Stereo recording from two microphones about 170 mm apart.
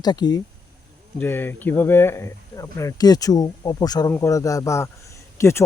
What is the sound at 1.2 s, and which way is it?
Speech, 10° left (ahead or behind).